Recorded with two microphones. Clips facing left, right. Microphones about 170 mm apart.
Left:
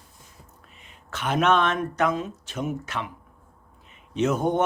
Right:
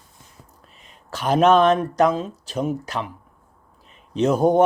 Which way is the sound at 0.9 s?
35° right (ahead or behind).